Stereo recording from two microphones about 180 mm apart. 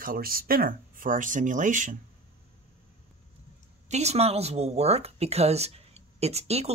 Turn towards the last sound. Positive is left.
turn(degrees=-35)  # may be behind; listen again after turning